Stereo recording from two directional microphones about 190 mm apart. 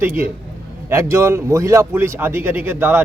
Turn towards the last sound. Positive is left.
turn(degrees=-10)  # may be behind; listen again after turning